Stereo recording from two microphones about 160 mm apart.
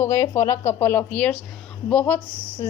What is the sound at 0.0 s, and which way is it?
Speech, 20° left (ahead or behind).